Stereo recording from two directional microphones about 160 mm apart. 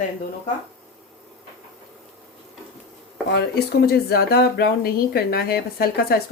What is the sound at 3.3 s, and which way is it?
Speech, 90° left.